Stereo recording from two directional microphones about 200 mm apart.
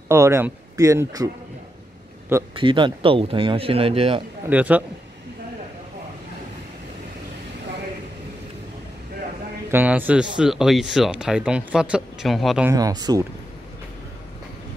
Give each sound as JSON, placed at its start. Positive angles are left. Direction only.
{"t": 0.1, "sound": "speech", "side_deg": -15}
{"t": 2.5, "sound": "speech", "side_deg": -25}
{"t": 4.5, "sound": "speech", "side_deg": -10}
{"t": 9.7, "sound": "speech", "side_deg": -10}
{"t": 12.6, "sound": "speech", "side_deg": -20}